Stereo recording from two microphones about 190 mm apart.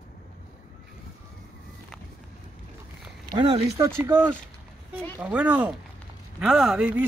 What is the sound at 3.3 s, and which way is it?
Speech, 25° right (ahead or behind).